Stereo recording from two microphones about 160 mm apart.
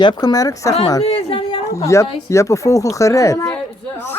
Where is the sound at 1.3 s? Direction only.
35° left (ahead or behind).